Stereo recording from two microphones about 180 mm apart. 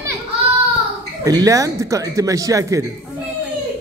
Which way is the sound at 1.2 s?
20° right (ahead or behind).